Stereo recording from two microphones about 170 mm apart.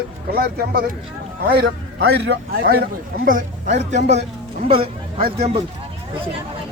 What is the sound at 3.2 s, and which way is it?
Speech, 55° right (ahead or behind).